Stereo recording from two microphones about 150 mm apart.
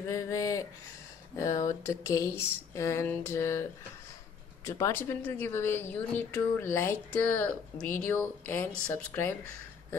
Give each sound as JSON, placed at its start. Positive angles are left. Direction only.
{"t": 0.1, "sound": "speech", "side_deg": 20}
{"t": 4.6, "sound": "a woman's voice", "side_deg": 20}